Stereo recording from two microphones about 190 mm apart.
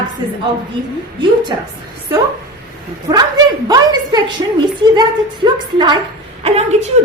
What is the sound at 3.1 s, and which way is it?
A woman's voice, 15° right (ahead or behind).